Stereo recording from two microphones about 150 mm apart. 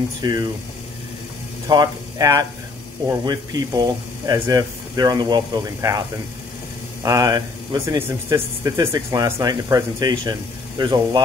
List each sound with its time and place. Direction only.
0.2 s speech: 30° right (ahead or behind)
1.7 s speech: 25° right (ahead or behind)